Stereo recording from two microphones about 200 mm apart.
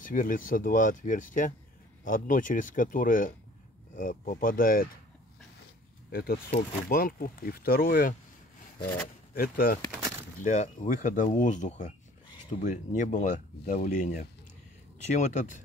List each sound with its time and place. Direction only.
0.0 s speech: 40° left (ahead or behind)
6.1 s speech: 50° left (ahead or behind)
9.3 s speech: 45° left (ahead or behind)